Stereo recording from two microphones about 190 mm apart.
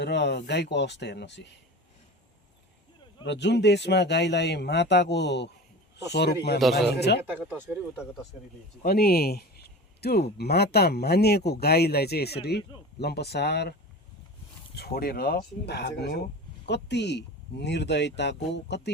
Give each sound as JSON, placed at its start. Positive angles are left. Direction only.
{"t": 0.0, "sound": "speech", "side_deg": 65}
{"t": 3.2, "sound": "speech", "side_deg": 65}
{"t": 7.3, "sound": "speech", "side_deg": -10}
{"t": 8.8, "sound": "speech", "side_deg": 55}
{"t": 14.8, "sound": "speech", "side_deg": 55}